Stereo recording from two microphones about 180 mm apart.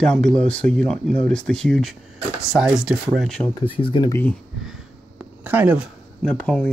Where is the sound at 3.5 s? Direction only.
25° left (ahead or behind).